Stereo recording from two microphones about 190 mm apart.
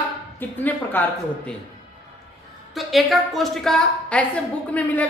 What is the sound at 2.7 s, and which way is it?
A woman's voice, centre (ahead or behind).